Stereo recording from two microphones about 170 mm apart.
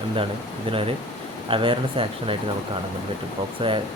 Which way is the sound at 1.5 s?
30° right (ahead or behind).